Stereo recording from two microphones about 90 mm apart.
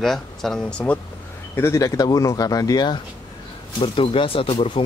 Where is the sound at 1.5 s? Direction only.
30° left (ahead or behind).